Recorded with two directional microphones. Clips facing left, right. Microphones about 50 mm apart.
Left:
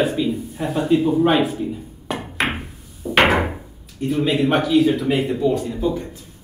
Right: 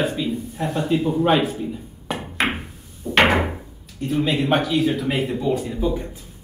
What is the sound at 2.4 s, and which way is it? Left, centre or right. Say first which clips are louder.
Door: even; centre.